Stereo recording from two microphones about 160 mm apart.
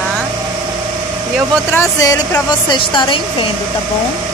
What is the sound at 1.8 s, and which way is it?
A woman's voice, 20° left (ahead or behind).